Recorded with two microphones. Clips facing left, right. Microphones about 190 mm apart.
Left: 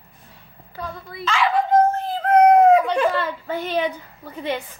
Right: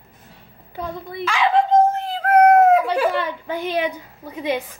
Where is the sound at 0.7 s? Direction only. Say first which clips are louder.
Right 4 dB; 20° right (ahead or behind).